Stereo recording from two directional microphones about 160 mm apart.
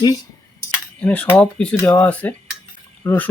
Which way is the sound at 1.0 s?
10° left (ahead or behind).